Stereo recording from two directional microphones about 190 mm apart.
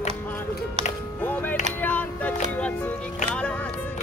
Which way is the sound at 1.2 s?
10° left (ahead or behind).